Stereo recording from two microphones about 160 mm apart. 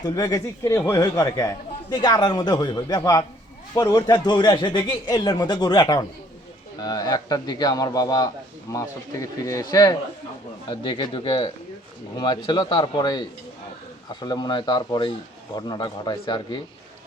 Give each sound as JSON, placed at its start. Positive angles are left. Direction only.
{"t": 0.0, "sound": "a man's voice", "side_deg": 25}